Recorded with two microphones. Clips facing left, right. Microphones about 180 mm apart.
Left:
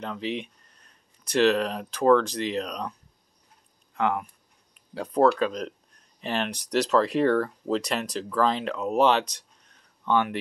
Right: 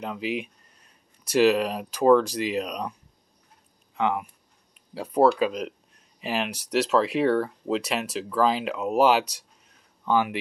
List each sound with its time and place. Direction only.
0.0 s speech: 5° right (ahead or behind)
3.9 s speech: 5° right (ahead or behind)